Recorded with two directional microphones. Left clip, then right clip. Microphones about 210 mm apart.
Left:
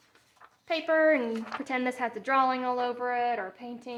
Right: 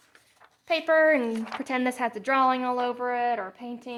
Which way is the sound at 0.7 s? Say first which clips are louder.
Right 3 dB; 30° right (ahead or behind).